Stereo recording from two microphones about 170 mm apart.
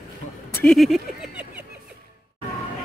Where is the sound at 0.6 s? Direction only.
Centre (ahead or behind).